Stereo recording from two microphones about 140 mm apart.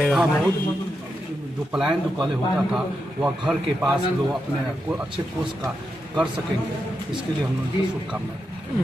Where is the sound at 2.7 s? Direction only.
5° right (ahead or behind).